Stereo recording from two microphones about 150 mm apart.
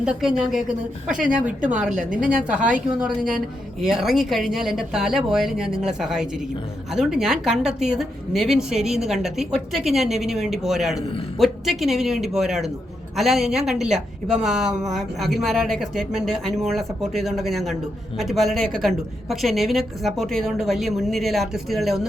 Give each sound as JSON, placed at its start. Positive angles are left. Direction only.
{"t": 0.0, "sound": "a woman's voice", "side_deg": -5}
{"t": 1.9, "sound": "a woman's voice", "side_deg": -60}
{"t": 2.1, "sound": "a woman's voice", "side_deg": -5}